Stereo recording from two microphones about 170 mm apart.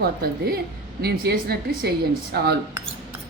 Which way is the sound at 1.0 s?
70° right (ahead or behind).